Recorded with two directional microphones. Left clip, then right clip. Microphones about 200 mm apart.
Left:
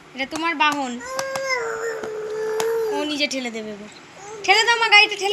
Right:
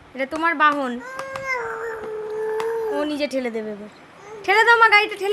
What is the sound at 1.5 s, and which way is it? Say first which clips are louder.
Howl: right 2 dB; 15° right (ahead or behind).